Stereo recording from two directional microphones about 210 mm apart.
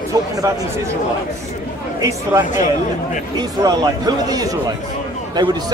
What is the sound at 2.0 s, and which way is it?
A man's voice, 15° right (ahead or behind).